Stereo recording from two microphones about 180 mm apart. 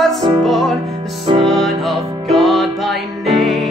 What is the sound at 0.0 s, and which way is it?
Music, centre (ahead or behind).